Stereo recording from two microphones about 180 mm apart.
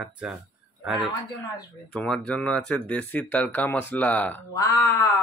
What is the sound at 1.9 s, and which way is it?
Speech, 5° left (ahead or behind).